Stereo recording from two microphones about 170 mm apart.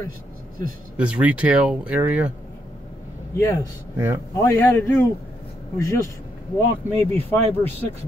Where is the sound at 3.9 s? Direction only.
15° right (ahead or behind).